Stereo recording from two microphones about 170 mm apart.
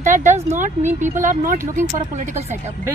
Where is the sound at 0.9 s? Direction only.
50° right (ahead or behind).